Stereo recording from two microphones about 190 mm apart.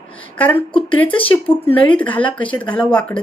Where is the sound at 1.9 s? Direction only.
5° left (ahead or behind).